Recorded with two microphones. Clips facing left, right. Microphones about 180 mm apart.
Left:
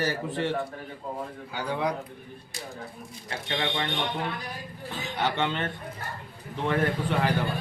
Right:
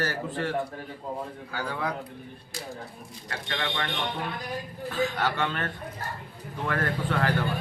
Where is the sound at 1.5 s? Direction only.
20° left (ahead or behind).